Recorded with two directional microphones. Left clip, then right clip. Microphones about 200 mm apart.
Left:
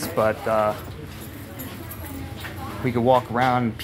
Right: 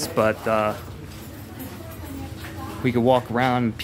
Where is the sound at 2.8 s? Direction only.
30° right (ahead or behind).